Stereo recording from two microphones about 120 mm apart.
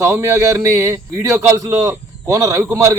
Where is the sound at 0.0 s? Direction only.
25° right (ahead or behind).